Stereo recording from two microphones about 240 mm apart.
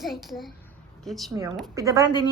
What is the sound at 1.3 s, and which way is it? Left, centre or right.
Speech, centre.